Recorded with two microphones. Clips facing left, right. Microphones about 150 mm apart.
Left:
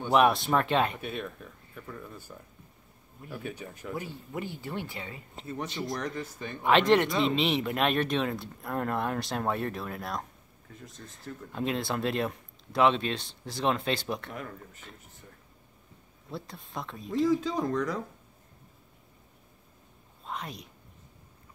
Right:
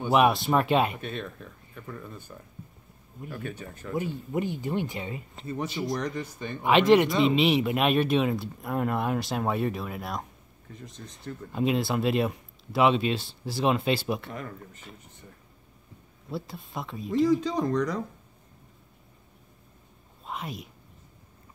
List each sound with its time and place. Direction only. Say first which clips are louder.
0.0 s speech: right 1 dB; 5° right (ahead or behind)
1.0 s speech: right 1 dB; 5° left (ahead or behind)
3.9 s speech: right 8 dB; 20° right (ahead or behind)
5.5 s speech: right 4 dB; centre (ahead or behind)
20.2 s a sound: right 2 dB; 5° right (ahead or behind)